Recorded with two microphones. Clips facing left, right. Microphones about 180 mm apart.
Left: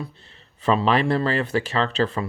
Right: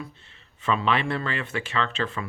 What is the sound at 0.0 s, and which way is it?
Speech, 35° left (ahead or behind).